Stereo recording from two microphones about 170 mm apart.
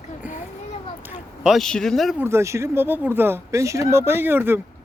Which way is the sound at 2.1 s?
15° right (ahead or behind).